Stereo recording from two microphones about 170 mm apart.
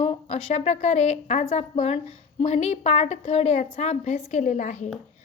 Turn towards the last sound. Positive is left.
turn(degrees=45)  # may be behind; listen again after turning